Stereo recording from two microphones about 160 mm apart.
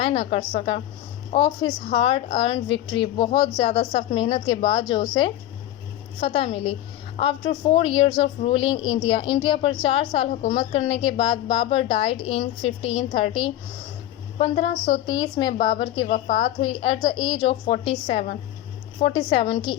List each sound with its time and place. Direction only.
0.0 s a woman's voice: 40° left (ahead or behind)
15.0 s a woman's voice: 25° left (ahead or behind)